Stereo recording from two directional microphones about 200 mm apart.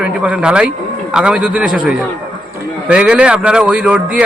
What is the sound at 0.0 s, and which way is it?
A man's voice, 5° right (ahead or behind).